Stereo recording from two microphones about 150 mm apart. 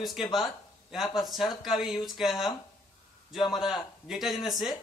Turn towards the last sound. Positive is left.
turn(degrees=0)  # may be behind; listen again after turning